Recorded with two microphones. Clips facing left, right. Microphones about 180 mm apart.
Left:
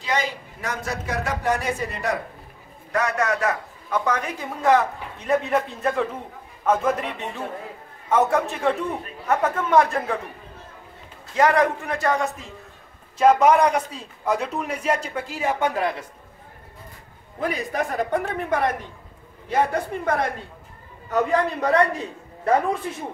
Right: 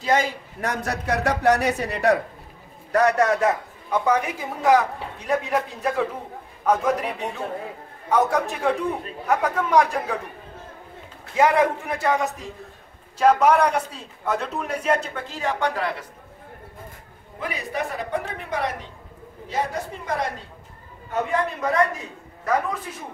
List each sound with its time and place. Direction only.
0.0 s a man's voice: 50° right (ahead or behind)
0.8 s speech: 65° right (ahead or behind)
2.9 s a man's voice: 35° right (ahead or behind)
4.0 s a man's voice: 10° right (ahead or behind)
11.3 s a man's voice: 5° right (ahead or behind)
13.2 s speech: 10° left (ahead or behind)
17.4 s a woman's voice: 45° left (ahead or behind)
21.1 s a man's voice: 35° left (ahead or behind)